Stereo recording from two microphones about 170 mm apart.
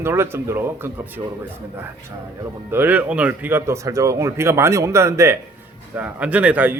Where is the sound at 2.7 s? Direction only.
10° right (ahead or behind).